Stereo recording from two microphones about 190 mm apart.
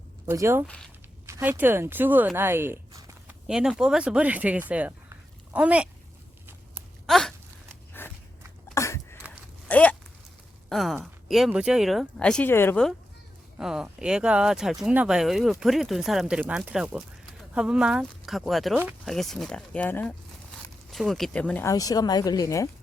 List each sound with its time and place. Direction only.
0.3 s speech: 15° right (ahead or behind)
3.4 s speech: 5° right (ahead or behind)
7.1 s a sound: centre (ahead or behind)
8.0 s biting: 10° left (ahead or behind)
8.7 s a sound: 15° left (ahead or behind)
10.7 s speech: centre (ahead or behind); by 22.7 s 15° left (ahead or behind)